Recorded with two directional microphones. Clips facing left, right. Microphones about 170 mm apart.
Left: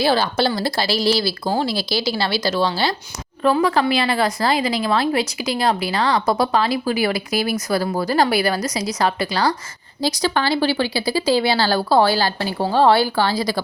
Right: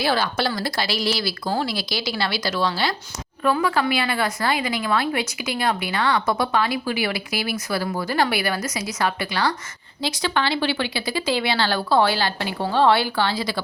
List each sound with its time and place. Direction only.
0.0 s a woman's voice: 30° left (ahead or behind)